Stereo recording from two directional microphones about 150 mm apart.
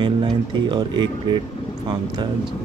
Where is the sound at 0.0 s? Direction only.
30° right (ahead or behind).